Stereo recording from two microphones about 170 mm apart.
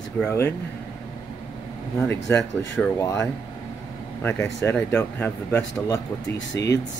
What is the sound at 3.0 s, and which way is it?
Speech, 20° left (ahead or behind).